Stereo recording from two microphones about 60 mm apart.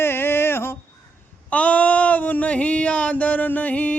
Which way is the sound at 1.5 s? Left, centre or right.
Left.